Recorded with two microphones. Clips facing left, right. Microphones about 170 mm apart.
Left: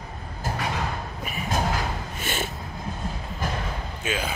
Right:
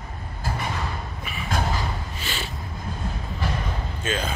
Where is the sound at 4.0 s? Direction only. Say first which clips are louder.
Right 1 dB; 10° left (ahead or behind).